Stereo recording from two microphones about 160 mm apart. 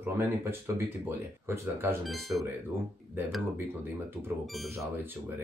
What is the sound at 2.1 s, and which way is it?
Speech, centre (ahead or behind).